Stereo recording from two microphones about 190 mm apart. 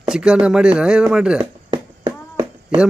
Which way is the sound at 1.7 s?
25° right (ahead or behind).